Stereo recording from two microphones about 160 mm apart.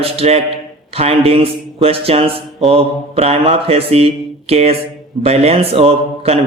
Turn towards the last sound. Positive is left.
turn(degrees=-40)  # may be behind; listen again after turning